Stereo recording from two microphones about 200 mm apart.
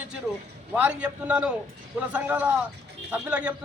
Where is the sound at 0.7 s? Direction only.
5° right (ahead or behind).